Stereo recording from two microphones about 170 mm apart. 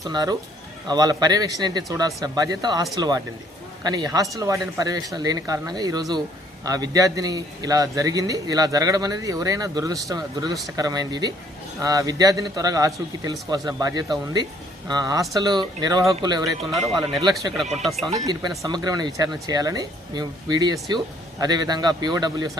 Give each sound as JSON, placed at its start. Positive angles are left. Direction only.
{"t": 0.0, "sound": "a man's voice", "side_deg": -20}
{"t": 17.8, "sound": "speech", "side_deg": 0}
{"t": 18.3, "sound": "a man's voice", "side_deg": -25}